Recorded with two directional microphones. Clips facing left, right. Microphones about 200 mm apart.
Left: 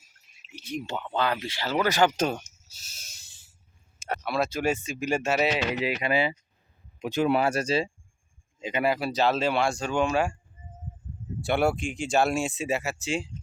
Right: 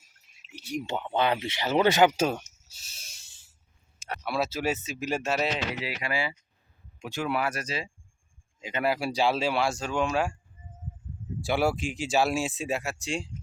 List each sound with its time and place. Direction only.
0.9 s speech: 20° right (ahead or behind); by 5.5 s centre (ahead or behind)
5.7 s speech: 20° left (ahead or behind)
8.8 s speech: 5° right (ahead or behind)
11.3 s speech: centre (ahead or behind)